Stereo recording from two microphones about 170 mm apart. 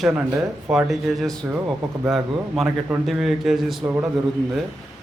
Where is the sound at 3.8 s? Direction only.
15° right (ahead or behind).